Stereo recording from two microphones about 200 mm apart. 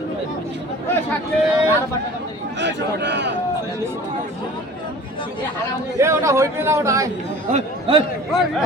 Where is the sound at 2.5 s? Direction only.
60° right (ahead or behind).